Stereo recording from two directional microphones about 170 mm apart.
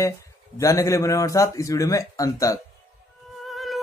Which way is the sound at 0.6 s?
20° left (ahead or behind).